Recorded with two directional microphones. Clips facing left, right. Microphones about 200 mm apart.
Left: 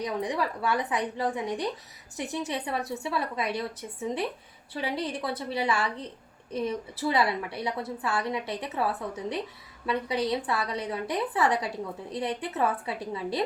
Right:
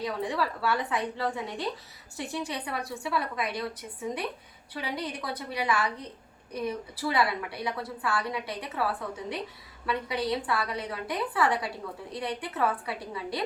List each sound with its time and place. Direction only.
0.0 s a woman's voice: 20° left (ahead or behind)